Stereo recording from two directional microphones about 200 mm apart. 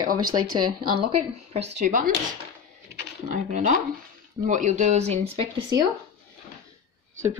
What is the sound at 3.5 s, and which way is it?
Speech, 40° right (ahead or behind).